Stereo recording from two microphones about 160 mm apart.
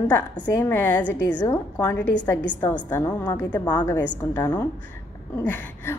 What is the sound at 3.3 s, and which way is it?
Speech, 25° left (ahead or behind).